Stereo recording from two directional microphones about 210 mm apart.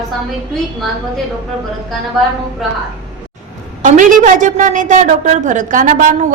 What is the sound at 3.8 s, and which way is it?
A woman's voice, 40° right (ahead or behind).